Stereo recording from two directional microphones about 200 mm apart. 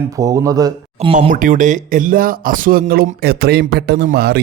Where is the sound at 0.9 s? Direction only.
30° right (ahead or behind).